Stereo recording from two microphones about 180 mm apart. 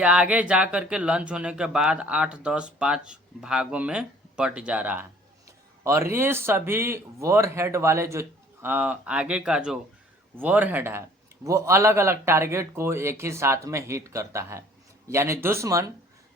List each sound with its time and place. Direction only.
0.0 s speech: 5° right (ahead or behind)